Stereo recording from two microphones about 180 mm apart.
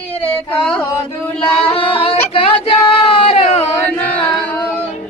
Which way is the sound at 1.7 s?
30° left (ahead or behind).